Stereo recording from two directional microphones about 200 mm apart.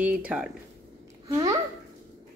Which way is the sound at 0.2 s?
5° right (ahead or behind).